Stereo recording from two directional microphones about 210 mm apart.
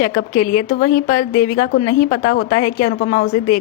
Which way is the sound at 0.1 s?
50° left (ahead or behind).